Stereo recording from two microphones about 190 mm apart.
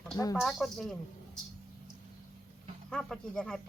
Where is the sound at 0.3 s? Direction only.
Centre (ahead or behind).